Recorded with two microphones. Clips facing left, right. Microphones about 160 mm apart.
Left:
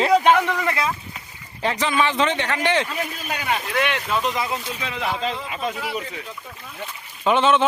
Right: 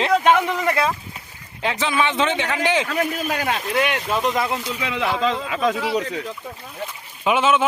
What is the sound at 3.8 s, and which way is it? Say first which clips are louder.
Speech: right 4 dB; 40° right (ahead or behind).